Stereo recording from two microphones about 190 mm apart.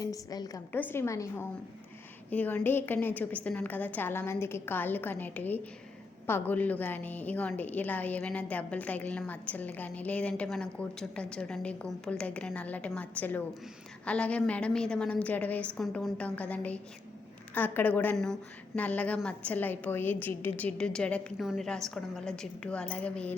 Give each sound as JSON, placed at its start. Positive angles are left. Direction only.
{"t": 0.0, "sound": "a woman's voice", "side_deg": 20}